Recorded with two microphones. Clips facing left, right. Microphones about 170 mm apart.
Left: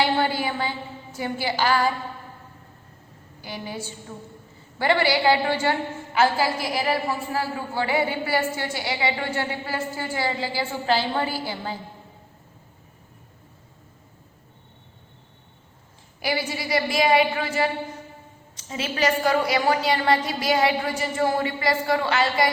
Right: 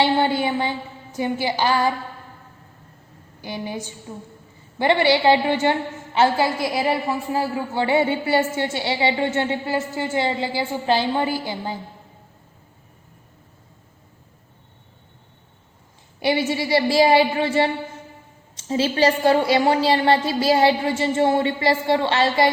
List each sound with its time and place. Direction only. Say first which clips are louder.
0.0 s a woman's voice: right 4 dB; 20° right (ahead or behind)
3.4 s a woman's voice: right 4 dB; 20° right (ahead or behind)
16.2 s a woman's voice: right 6 dB; 25° right (ahead or behind)